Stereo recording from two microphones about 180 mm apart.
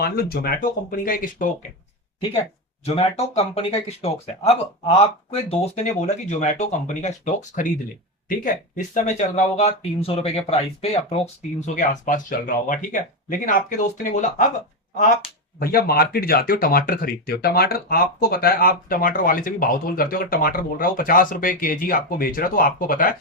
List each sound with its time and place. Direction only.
0.0 s speech: 60° left (ahead or behind)
2.8 s speech: 35° left (ahead or behind)
11.6 s speech: 45° left (ahead or behind)
15.5 s speech: 55° left (ahead or behind)